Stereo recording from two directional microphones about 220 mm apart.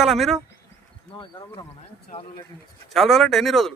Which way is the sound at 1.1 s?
20° left (ahead or behind).